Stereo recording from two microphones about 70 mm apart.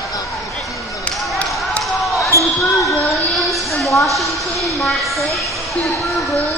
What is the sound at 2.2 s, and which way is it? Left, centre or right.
Basketball bounce, left.